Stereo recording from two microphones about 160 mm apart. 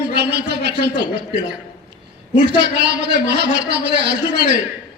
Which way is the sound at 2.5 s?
90° right.